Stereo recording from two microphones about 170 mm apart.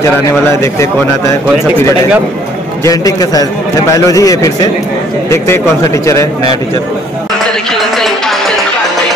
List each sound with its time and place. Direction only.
0.5 s speech: 15° left (ahead or behind)
2.8 s speech: 20° left (ahead or behind)
6.0 s speech: 20° left (ahead or behind)
8.0 s music: centre (ahead or behind)